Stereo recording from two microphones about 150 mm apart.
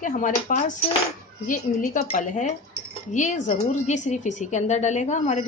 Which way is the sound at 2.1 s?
55° left (ahead or behind).